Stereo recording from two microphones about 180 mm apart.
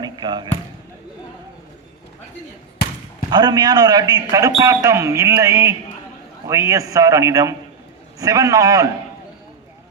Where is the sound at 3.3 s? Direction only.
25° right (ahead or behind).